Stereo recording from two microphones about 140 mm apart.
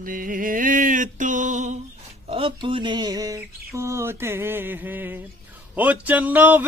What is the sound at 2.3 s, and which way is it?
Mantra, 40° right (ahead or behind).